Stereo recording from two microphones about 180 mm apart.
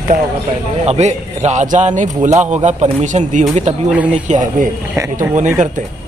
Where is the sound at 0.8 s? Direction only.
40° right (ahead or behind).